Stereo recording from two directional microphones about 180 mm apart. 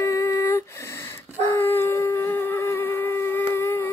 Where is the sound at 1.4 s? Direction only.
10° left (ahead or behind).